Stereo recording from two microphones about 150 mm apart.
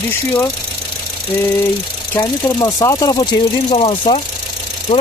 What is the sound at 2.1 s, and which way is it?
Speech, 25° left (ahead or behind).